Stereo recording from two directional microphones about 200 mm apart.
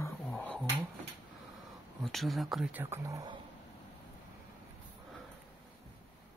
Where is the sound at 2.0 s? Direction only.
Centre (ahead or behind).